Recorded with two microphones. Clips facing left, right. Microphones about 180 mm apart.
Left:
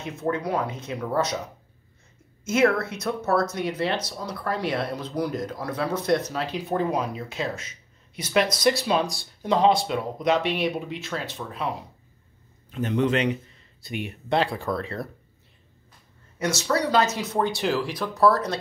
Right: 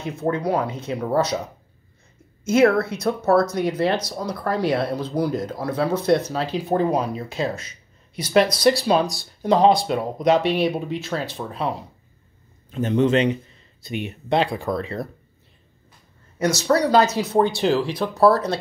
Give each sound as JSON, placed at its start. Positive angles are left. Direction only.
{"t": 0.0, "sound": "speech", "side_deg": -35}
{"t": 2.4, "sound": "speech", "side_deg": -35}
{"t": 12.7, "sound": "speech", "side_deg": -25}
{"t": 16.3, "sound": "speech", "side_deg": -40}